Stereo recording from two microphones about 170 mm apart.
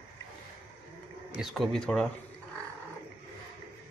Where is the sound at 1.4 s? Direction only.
Centre (ahead or behind).